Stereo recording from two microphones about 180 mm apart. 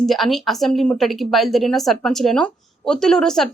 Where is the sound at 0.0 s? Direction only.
Centre (ahead or behind).